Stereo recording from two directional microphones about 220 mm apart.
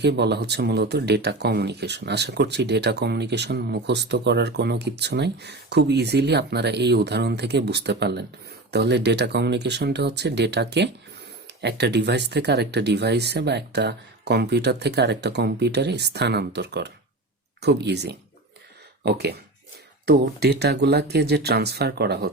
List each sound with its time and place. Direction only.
0.0 s speech: 50° right (ahead or behind)